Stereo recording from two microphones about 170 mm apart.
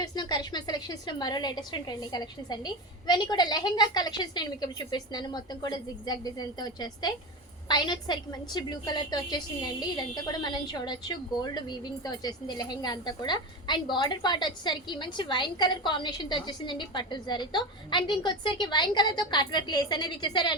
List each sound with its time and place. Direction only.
0.0 s a woman's voice: 25° left (ahead or behind)